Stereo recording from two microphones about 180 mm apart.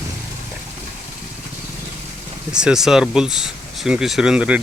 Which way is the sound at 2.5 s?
5° right (ahead or behind).